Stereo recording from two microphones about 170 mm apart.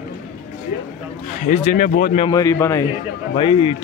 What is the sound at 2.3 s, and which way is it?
Speech, 20° left (ahead or behind).